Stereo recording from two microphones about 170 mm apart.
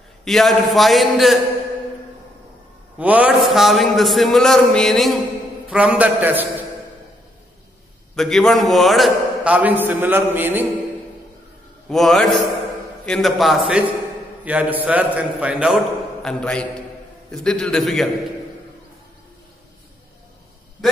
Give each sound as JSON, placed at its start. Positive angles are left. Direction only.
{"t": 0.2, "sound": "a man's voice", "side_deg": 0}
{"t": 3.0, "sound": "a man's voice", "side_deg": -10}
{"t": 8.2, "sound": "a man's voice", "side_deg": 0}
{"t": 11.9, "sound": "a man's voice", "side_deg": 0}